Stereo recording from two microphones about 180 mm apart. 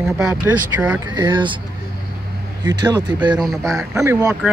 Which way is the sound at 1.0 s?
25° right (ahead or behind).